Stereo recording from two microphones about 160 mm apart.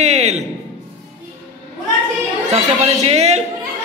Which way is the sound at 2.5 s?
40° right (ahead or behind).